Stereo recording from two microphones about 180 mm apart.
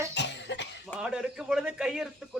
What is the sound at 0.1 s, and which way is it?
Cough, 75° left (ahead or behind).